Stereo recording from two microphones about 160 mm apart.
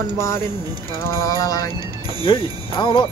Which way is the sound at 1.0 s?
20° left (ahead or behind).